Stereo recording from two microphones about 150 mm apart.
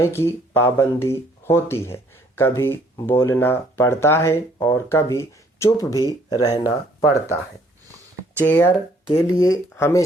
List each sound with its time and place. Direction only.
0.0 s speech: 15° left (ahead or behind)
8.4 s speech: 15° left (ahead or behind)